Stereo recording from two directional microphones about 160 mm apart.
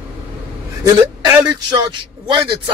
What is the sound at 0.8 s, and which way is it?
A man's voice, 25° right (ahead or behind).